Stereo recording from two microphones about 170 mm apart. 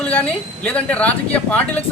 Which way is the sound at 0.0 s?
10° left (ahead or behind).